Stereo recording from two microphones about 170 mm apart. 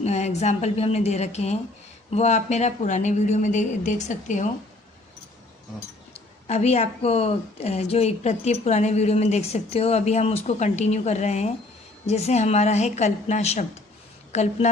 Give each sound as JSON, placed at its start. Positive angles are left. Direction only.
{"t": 0.0, "sound": "a woman's voice", "side_deg": 40}
{"t": 6.1, "sound": "a woman's voice", "side_deg": 40}